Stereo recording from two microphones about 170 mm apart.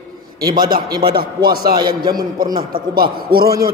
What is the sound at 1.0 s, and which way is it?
A man's voice, 65° right (ahead or behind).